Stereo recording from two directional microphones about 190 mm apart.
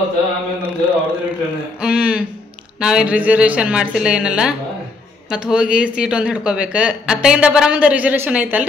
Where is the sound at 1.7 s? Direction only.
5° right (ahead or behind).